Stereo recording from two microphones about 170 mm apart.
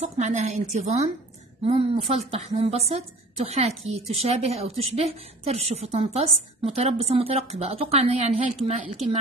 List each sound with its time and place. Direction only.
0.0 s a woman's voice: 45° right (ahead or behind)